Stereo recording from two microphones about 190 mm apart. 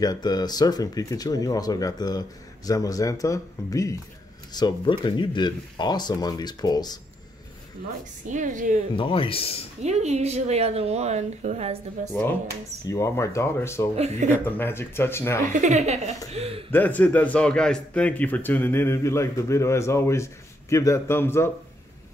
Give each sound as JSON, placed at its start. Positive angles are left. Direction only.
{"t": 0.0, "sound": "speech", "side_deg": 20}
{"t": 8.3, "sound": "a woman's voice", "side_deg": -40}
{"t": 8.9, "sound": "speech", "side_deg": 25}
{"t": 9.8, "sound": "a woman's voice", "side_deg": -35}
{"t": 12.1, "sound": "a man's voice", "side_deg": 10}
{"t": 13.9, "sound": "a woman's voice", "side_deg": -35}
{"t": 14.4, "sound": "a man's voice", "side_deg": 10}
{"t": 15.5, "sound": "a woman's voice", "side_deg": -40}
{"t": 16.7, "sound": "a man's voice", "side_deg": 10}